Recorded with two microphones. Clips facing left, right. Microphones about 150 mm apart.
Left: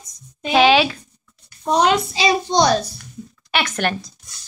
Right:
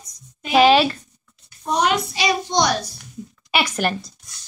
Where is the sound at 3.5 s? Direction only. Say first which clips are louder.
Even; 10° right (ahead or behind).